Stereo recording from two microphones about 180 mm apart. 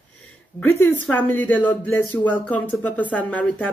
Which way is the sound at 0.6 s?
10° left (ahead or behind).